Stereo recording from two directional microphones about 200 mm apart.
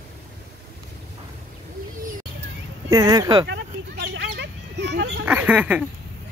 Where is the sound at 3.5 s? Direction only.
55° right (ahead or behind).